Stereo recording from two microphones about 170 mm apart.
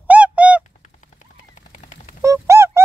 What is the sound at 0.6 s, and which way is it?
Fowl, 45° left (ahead or behind).